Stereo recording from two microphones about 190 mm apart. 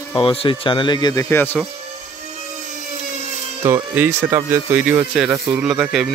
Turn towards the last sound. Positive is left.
turn(degrees=-5)  # may be behind; listen again after turning